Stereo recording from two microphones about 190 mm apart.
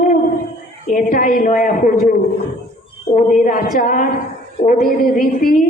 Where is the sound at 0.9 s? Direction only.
45° left (ahead or behind).